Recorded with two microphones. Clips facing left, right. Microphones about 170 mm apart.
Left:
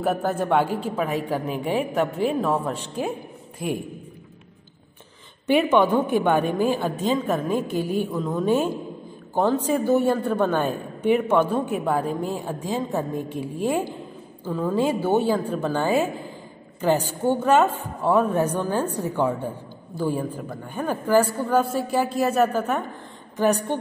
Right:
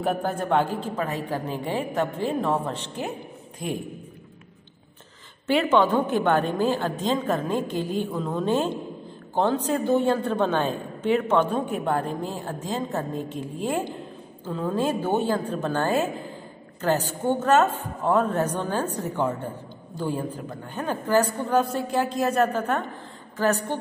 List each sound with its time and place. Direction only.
0.0 s a woman's voice: 5° left (ahead or behind)
5.5 s a woman's voice: 15° left (ahead or behind)
8.1 s a woman's voice: centre (ahead or behind); by 23.8 s 15° left (ahead or behind)